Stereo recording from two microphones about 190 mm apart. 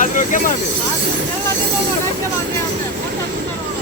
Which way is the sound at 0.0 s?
45° left (ahead or behind).